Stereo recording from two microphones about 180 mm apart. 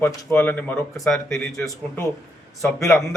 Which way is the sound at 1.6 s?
15° left (ahead or behind).